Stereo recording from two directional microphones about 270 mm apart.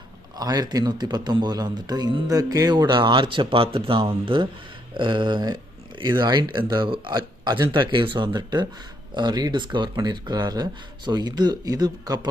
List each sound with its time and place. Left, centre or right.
0.3 s a man's voice: centre